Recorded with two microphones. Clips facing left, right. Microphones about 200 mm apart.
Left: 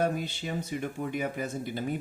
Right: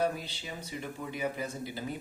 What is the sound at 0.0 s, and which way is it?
Speech, 55° left (ahead or behind).